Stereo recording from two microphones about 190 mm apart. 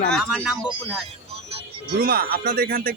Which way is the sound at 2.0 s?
50° right (ahead or behind).